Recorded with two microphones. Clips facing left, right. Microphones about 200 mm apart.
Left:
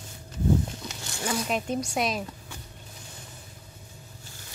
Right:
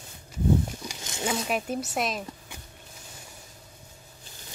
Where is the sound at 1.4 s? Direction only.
5° right (ahead or behind).